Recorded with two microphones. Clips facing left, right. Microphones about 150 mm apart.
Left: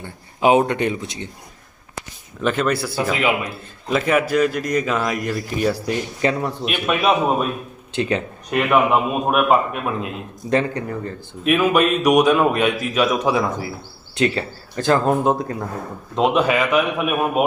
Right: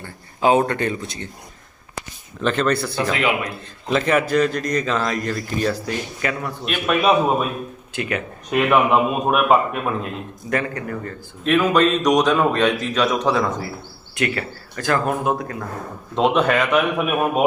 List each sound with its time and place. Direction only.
0.0 s speech: 15° left (ahead or behind)
2.4 s a man's voice: 5° left (ahead or behind)
6.2 s speech: 25° left (ahead or behind)
6.7 s a man's voice: 5° left (ahead or behind)
7.9 s speech: 25° left (ahead or behind)
8.4 s a man's voice: centre (ahead or behind)
10.5 s speech: 25° left (ahead or behind)
11.4 s speech: 10° left (ahead or behind)
14.2 s speech: 25° left (ahead or behind)
16.1 s a man's voice: centre (ahead or behind)